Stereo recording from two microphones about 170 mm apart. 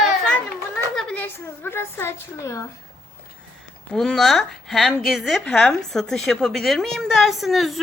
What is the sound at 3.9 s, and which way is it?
A woman's voice, centre (ahead or behind).